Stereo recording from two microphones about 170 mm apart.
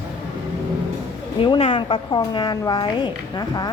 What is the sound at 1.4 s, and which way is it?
A woman's voice, 35° left (ahead or behind).